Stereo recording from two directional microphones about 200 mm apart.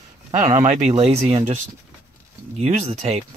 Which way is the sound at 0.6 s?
30° right (ahead or behind).